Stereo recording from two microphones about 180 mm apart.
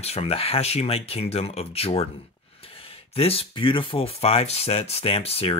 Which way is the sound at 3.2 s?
30° left (ahead or behind).